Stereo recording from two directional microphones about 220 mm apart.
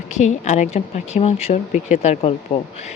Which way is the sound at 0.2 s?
30° left (ahead or behind).